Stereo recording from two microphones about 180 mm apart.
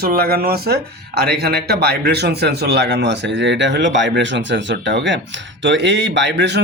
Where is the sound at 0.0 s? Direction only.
55° right (ahead or behind).